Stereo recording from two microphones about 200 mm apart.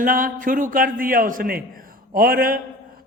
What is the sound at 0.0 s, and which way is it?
A man's voice, 45° right (ahead or behind).